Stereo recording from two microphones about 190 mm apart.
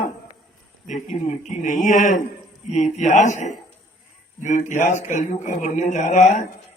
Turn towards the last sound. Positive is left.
turn(degrees=40)  # may be behind; listen again after turning